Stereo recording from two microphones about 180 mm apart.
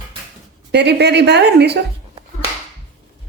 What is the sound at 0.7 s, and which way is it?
A woman's voice, 70° right (ahead or behind).